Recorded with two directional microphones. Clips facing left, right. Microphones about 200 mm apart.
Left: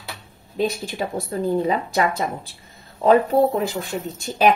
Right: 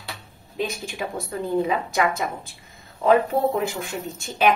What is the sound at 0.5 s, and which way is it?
Speech, 35° left (ahead or behind).